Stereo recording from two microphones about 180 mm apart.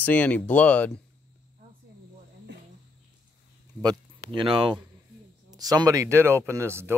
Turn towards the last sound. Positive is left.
turn(degrees=-15)  # may be behind; listen again after turning